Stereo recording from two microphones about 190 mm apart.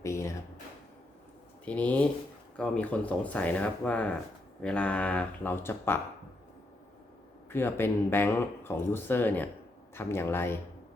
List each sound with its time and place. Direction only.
0.0 s a sound: 15° left (ahead or behind)
1.6 s speech: 5° left (ahead or behind)
7.5 s speech: 10° left (ahead or behind)